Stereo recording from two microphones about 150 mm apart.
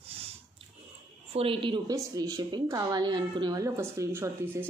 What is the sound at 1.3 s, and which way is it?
Speech, 35° right (ahead or behind).